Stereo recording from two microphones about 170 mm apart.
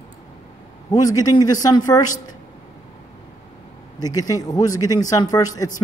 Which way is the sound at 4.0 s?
20° left (ahead or behind).